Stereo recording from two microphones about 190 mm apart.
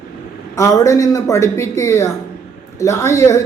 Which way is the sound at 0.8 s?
20° left (ahead or behind).